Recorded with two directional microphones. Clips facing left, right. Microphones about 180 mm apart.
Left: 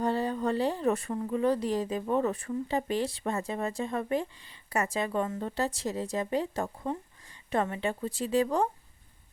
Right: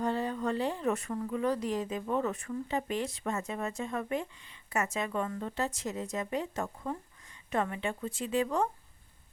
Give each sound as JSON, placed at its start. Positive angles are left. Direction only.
{"t": 0.0, "sound": "speech", "side_deg": 35}